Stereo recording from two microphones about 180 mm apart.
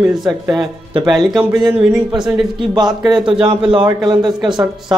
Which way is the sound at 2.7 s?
25° right (ahead or behind).